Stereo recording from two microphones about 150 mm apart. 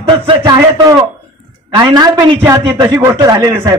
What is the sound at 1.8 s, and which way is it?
A man's voice, 25° right (ahead or behind).